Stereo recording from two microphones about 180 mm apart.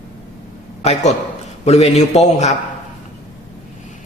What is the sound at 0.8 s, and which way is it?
A man's voice, 35° left (ahead or behind).